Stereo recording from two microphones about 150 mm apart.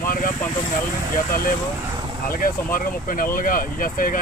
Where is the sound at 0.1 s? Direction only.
65° left (ahead or behind).